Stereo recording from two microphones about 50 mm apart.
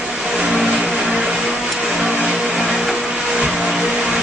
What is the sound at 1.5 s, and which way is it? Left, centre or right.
Vehicle, centre.